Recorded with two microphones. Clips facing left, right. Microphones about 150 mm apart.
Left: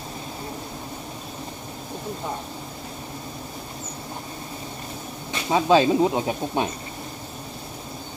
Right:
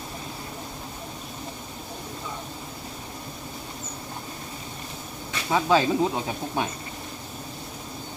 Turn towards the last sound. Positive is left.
turn(degrees=20)  # may be behind; listen again after turning